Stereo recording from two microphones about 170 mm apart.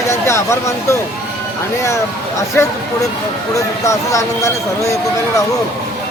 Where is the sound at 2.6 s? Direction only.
15° left (ahead or behind).